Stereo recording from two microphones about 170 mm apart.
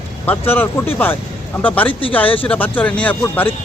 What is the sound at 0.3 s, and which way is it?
A man's voice, 10° left (ahead or behind).